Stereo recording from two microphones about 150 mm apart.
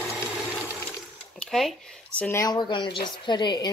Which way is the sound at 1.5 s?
5° left (ahead or behind).